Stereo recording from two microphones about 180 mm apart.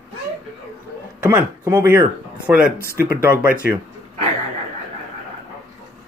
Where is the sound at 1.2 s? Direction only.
10° right (ahead or behind).